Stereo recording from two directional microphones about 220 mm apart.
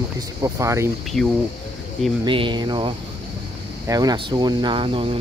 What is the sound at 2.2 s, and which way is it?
Speech, 20° right (ahead or behind).